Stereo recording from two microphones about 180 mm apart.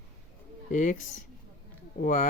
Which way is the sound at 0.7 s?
45° left (ahead or behind).